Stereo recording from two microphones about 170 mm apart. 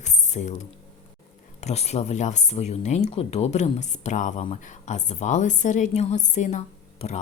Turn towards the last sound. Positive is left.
turn(degrees=40)  # may be behind; listen again after turning